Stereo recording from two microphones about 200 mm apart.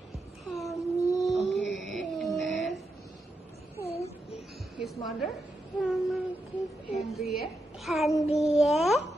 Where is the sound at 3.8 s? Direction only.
30° left (ahead or behind).